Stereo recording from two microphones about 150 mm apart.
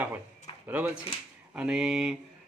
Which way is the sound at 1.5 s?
5° right (ahead or behind).